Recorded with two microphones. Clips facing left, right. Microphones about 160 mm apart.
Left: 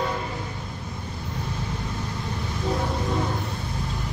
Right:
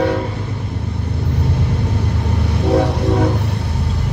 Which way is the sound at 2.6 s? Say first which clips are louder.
Right 11 dB; 75° right (ahead or behind).